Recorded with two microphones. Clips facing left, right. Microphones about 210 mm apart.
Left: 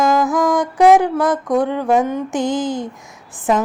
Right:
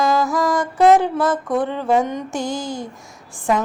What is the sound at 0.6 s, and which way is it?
Music, 15° left (ahead or behind).